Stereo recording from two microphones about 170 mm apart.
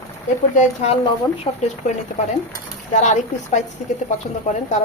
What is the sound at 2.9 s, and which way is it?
Speech, 45° left (ahead or behind).